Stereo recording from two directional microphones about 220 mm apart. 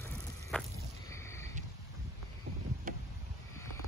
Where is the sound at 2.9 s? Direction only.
40° right (ahead or behind).